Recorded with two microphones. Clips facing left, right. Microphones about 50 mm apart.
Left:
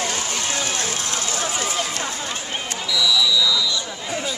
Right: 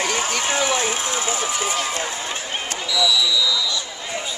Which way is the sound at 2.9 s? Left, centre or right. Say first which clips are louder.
Even; centre.